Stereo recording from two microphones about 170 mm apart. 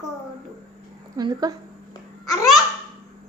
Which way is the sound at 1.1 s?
20° right (ahead or behind).